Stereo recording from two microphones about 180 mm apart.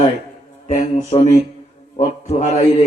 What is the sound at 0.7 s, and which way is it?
A man's voice, 35° left (ahead or behind).